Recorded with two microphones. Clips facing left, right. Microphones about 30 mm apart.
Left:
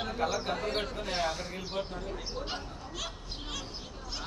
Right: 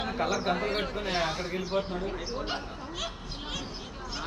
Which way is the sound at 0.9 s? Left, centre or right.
Right.